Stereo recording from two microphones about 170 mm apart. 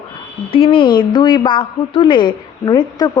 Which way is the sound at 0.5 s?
30° left (ahead or behind).